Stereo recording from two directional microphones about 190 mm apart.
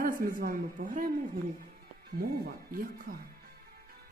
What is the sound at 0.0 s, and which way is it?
A woman's voice, 50° right (ahead or behind).